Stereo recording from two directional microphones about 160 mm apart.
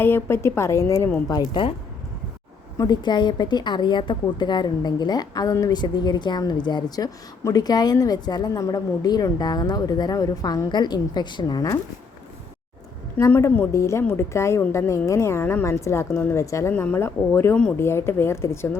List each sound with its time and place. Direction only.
0.0 s a woman's voice: 15° left (ahead or behind)
2.7 s a woman's voice: 25° left (ahead or behind)
13.1 s a woman's voice: 15° left (ahead or behind)